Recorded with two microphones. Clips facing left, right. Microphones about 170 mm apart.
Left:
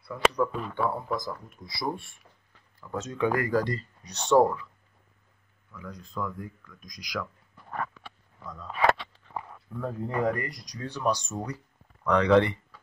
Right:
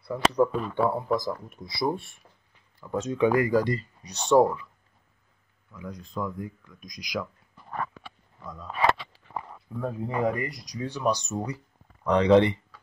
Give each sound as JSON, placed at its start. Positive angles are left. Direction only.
{"t": 0.1, "sound": "speech", "side_deg": -30}
{"t": 5.7, "sound": "speech", "side_deg": -15}
{"t": 8.0, "sound": "a sound", "side_deg": -10}
{"t": 9.8, "sound": "speech", "side_deg": -10}
{"t": 12.0, "sound": "speech", "side_deg": -25}